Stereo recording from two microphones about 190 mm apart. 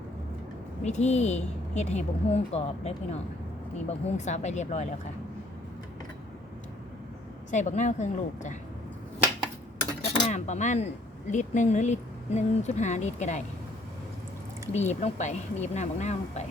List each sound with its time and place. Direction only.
0.9 s speech: 35° left (ahead or behind)
7.5 s speech: 40° left (ahead or behind)
10.2 s speech: 35° left (ahead or behind)
14.7 s speech: 35° left (ahead or behind)